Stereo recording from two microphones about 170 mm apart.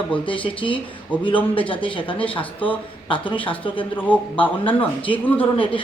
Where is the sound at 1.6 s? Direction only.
30° left (ahead or behind).